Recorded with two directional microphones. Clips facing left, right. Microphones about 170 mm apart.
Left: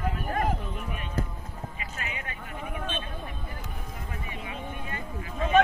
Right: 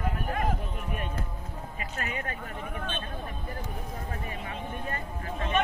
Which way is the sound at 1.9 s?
40° right (ahead or behind).